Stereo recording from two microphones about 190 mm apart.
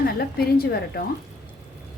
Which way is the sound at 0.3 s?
55° left (ahead or behind).